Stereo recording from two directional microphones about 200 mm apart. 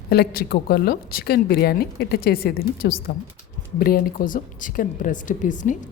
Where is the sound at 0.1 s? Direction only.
50° left (ahead or behind).